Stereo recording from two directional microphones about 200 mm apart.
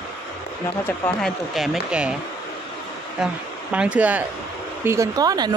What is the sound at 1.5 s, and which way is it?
Speech, centre (ahead or behind).